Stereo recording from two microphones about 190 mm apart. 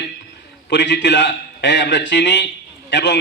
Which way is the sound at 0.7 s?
70° left (ahead or behind).